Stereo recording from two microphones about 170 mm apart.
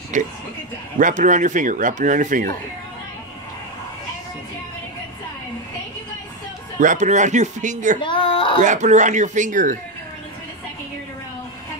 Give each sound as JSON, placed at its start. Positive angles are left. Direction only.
{"t": 0.1, "sound": "speech", "side_deg": -45}
{"t": 6.8, "sound": "speech", "side_deg": -45}
{"t": 8.0, "sound": "a sound", "side_deg": 30}
{"t": 8.6, "sound": "speech", "side_deg": -45}